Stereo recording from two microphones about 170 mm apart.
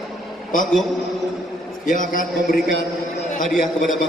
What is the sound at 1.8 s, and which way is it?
A man's voice, 50° left (ahead or behind).